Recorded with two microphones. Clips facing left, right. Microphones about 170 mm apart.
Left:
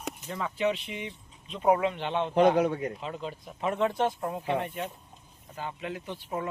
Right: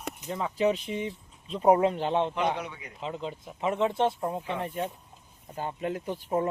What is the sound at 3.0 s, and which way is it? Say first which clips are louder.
Speech: right 1 dB; 20° right (ahead or behind).